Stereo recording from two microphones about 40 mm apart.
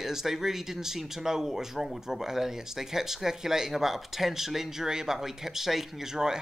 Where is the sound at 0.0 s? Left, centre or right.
Centre.